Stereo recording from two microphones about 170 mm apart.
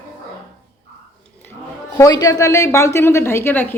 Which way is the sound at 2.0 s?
20° left (ahead or behind).